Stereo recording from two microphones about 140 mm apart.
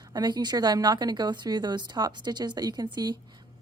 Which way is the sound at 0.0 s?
30° right (ahead or behind).